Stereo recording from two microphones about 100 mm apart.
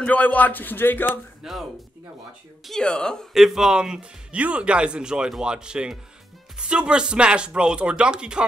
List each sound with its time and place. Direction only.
0.0 s speech: 15° left (ahead or behind)
1.4 s speech: 5° right (ahead or behind)
3.3 s speech: 5° right (ahead or behind)